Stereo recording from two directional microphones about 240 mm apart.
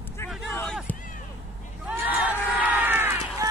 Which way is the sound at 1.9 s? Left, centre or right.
Centre.